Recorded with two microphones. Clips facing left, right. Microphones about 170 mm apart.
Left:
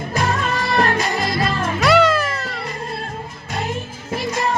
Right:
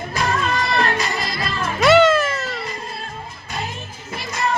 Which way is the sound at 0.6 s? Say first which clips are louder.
Left 2 dB; 45° left (ahead or behind).